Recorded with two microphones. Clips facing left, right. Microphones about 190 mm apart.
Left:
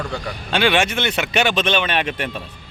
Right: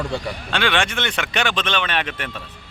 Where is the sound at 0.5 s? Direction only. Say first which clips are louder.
Left 4 dB; 10° left (ahead or behind).